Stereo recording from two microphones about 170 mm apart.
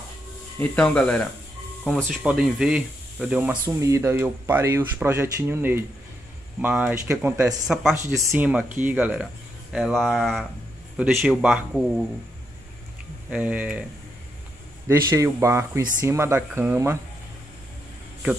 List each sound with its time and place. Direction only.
0.6 s speech: 5° left (ahead or behind)
3.6 s speech: 20° right (ahead or behind)
8.1 s speech: 15° right (ahead or behind)
13.3 s speech: 10° right (ahead or behind)
14.9 s speech: 20° right (ahead or behind)